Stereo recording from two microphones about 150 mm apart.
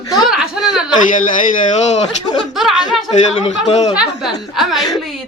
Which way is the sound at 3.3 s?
45° left (ahead or behind).